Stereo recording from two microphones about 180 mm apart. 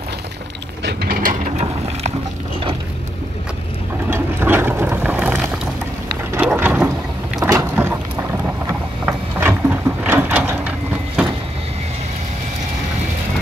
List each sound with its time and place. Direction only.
0.8 s ratchet: 55° right (ahead or behind)
4.1 s boat: 10° right (ahead or behind)
7.4 s vehicle: 15° right (ahead or behind)